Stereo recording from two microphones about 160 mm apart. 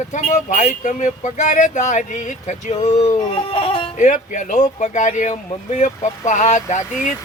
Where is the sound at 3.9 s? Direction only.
50° left (ahead or behind).